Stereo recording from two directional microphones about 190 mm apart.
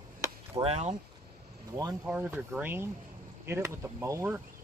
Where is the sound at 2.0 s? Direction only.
10° right (ahead or behind).